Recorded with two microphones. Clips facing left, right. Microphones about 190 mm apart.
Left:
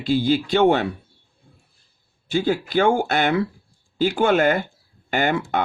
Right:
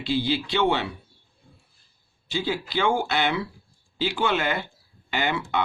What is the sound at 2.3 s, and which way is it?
Speech, 50° left (ahead or behind).